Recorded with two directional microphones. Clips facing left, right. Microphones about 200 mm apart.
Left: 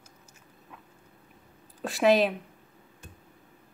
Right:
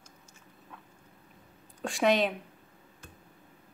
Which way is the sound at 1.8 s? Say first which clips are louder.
Left 4 dB; centre (ahead or behind).